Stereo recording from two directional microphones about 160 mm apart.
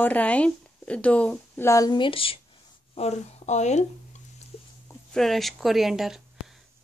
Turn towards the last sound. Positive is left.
turn(degrees=-5)  # may be behind; listen again after turning